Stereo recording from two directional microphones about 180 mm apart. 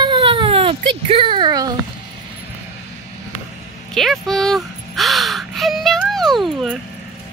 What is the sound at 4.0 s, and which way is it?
Gasp, centre (ahead or behind).